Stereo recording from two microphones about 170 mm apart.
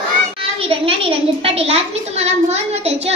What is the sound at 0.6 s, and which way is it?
A child's voice, 35° right (ahead or behind).